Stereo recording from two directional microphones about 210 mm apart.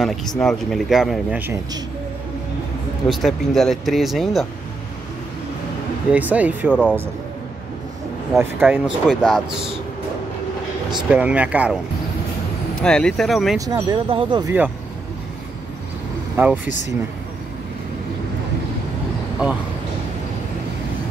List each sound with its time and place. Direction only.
0.0 s speech: centre (ahead or behind)
3.1 s speech: centre (ahead or behind)
6.1 s speech: 5° right (ahead or behind)
6.7 s speech: 5° left (ahead or behind)
8.4 s speech: 10° right (ahead or behind)
11.1 s speech: 5° right (ahead or behind)
12.8 s speech: 5° left (ahead or behind)
13.6 s speech: 20° right (ahead or behind)
16.4 s speech: 10° right (ahead or behind)